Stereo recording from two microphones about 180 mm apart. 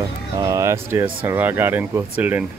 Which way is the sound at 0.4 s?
20° right (ahead or behind).